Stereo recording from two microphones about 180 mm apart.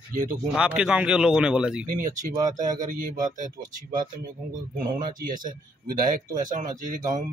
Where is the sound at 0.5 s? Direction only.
5° right (ahead or behind).